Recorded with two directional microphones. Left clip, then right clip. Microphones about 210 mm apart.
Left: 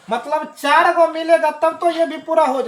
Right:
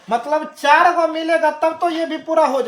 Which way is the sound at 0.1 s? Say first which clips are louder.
Right 2 dB; 25° right (ahead or behind).